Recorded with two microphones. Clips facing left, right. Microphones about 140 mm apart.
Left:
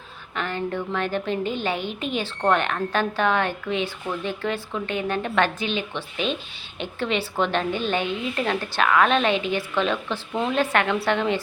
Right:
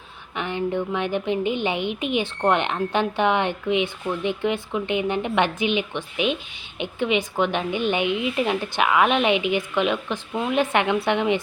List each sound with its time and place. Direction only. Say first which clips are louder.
0.3 s a woman's voice: right 2 dB; 15° right (ahead or behind)
10.6 s a woman's voice: right 2 dB; 20° right (ahead or behind)